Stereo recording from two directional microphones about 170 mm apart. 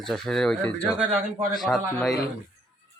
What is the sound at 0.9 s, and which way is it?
Speech, 5° right (ahead or behind).